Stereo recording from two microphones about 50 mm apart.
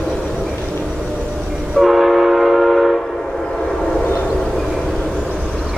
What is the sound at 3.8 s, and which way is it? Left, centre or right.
Train, centre.